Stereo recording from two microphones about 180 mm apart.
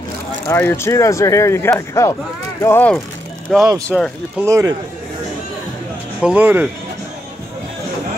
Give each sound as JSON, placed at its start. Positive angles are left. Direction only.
{"t": 0.5, "sound": "speech", "side_deg": 15}
{"t": 4.5, "sound": "speech", "side_deg": -15}
{"t": 6.2, "sound": "speech", "side_deg": -10}